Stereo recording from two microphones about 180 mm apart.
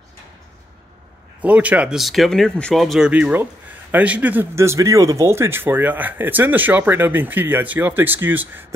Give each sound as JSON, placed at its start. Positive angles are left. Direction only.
{"t": 1.4, "sound": "a man's voice", "side_deg": -10}